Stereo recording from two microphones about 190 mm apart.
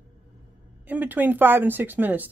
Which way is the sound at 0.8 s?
10° right (ahead or behind).